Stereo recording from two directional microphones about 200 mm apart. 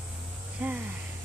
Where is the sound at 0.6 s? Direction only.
10° right (ahead or behind).